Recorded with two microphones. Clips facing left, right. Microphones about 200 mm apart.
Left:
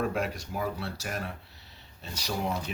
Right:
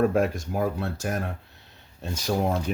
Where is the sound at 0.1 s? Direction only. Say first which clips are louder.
Right 8 dB; 50° right (ahead or behind).